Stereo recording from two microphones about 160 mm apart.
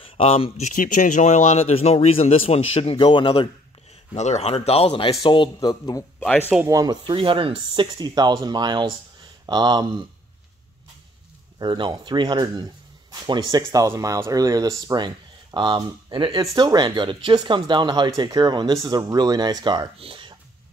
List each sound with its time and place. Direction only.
0.0 s speech: 35° left (ahead or behind)
4.1 s speech: 45° left (ahead or behind); by 6.0 s 25° left (ahead or behind)
6.1 s speech: 10° left (ahead or behind)
6.7 s speech: 25° right (ahead or behind)
11.5 s speech: 30° right (ahead or behind)